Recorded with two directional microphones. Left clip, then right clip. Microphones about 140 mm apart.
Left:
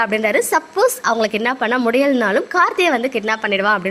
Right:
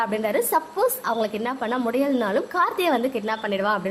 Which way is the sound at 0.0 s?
20° left (ahead or behind).